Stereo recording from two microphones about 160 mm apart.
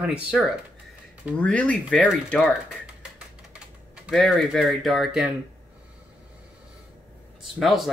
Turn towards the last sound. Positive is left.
turn(degrees=0)  # may be behind; listen again after turning